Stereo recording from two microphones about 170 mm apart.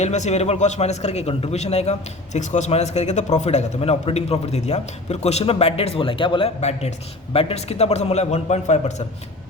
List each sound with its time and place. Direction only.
0.0 s a man's voice: 40° left (ahead or behind)